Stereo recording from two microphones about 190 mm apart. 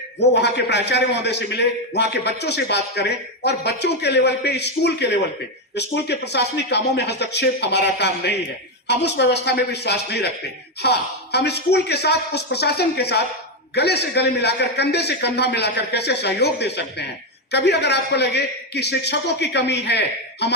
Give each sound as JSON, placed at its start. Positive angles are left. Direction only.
{"t": 0.2, "sound": "a man's voice", "side_deg": 60}